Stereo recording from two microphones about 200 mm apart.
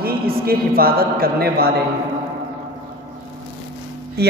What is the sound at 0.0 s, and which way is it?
A woman's voice, 50° right (ahead or behind).